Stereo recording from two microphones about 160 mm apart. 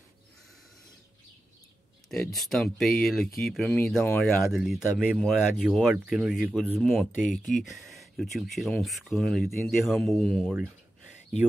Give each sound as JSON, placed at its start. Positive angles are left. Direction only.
{"t": 2.0, "sound": "speech", "side_deg": 0}